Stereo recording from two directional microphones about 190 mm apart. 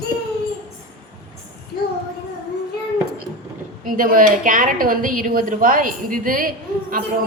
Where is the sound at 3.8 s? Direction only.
45° right (ahead or behind).